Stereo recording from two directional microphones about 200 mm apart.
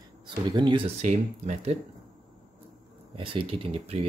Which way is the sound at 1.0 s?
35° right (ahead or behind).